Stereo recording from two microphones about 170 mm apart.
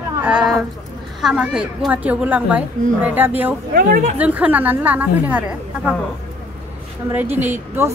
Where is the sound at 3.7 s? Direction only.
55° right (ahead or behind).